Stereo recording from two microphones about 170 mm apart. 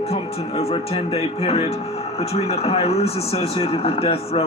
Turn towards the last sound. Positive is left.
turn(degrees=35)  # may be behind; listen again after turning